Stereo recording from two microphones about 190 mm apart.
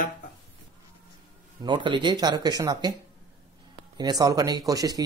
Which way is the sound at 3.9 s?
20° right (ahead or behind).